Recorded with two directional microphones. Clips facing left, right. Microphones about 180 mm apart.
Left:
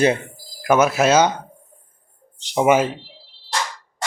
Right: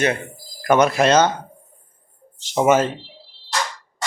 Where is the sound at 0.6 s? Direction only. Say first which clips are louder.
Even; 5° left (ahead or behind).